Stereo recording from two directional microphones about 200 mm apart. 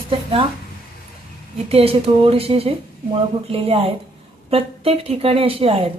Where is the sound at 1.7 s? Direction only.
30° right (ahead or behind).